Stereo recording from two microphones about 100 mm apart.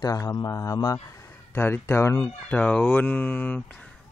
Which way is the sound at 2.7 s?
10° left (ahead or behind).